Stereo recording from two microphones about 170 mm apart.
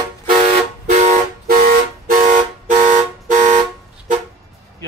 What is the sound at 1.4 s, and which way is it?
Vehicle horn, 60° right (ahead or behind).